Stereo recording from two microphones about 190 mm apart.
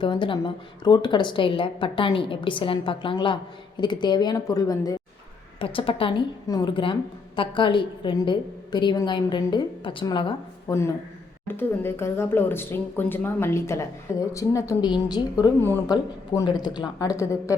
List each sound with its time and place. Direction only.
0.0 s a woman's voice: 25° left (ahead or behind)
10.7 s speech: 15° left (ahead or behind)